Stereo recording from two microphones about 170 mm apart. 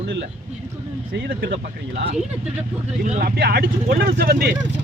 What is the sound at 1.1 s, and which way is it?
Speech, 90° right.